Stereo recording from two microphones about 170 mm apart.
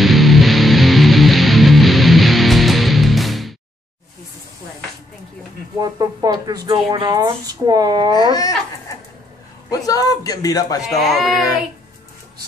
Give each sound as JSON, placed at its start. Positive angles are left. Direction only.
{"t": 0.0, "sound": "music", "side_deg": 0}
{"t": 5.8, "sound": "speech", "side_deg": -20}
{"t": 8.3, "sound": "a man's voice", "side_deg": 20}
{"t": 9.7, "sound": "a man's voice", "side_deg": 20}
{"t": 11.0, "sound": "speech", "side_deg": 0}